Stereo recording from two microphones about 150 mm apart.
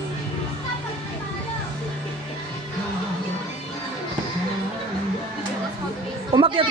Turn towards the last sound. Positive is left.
turn(degrees=-35)  # may be behind; listen again after turning